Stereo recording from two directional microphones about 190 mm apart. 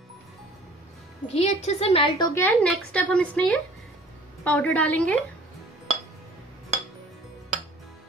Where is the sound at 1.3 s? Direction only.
35° left (ahead or behind).